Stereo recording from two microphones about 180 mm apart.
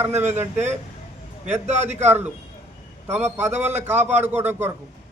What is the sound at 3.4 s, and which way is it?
Speech, 10° right (ahead or behind).